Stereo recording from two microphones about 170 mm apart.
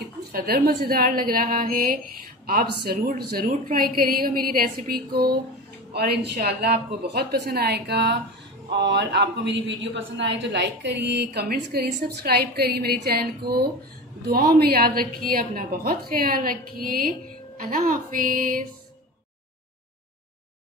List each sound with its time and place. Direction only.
0.3 s a woman's voice: 65° right (ahead or behind)